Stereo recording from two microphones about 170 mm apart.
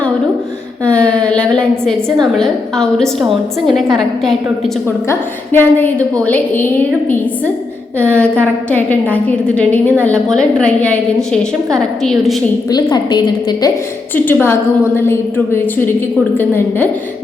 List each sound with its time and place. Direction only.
0.9 s a woman's voice: 5° left (ahead or behind)
5.0 s a woman's voice: 10° left (ahead or behind)
12.7 s a woman's voice: 25° left (ahead or behind)
14.3 s a woman's voice: 15° left (ahead or behind)